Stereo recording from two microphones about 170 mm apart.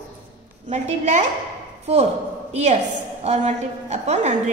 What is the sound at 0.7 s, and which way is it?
Speech, 45° right (ahead or behind).